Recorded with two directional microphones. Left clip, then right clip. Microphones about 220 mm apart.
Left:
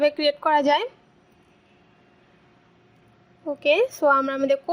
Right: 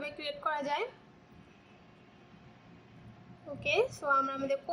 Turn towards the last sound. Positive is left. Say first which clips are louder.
# left 11 dB
turn(degrees=35)  # may be behind; listen again after turning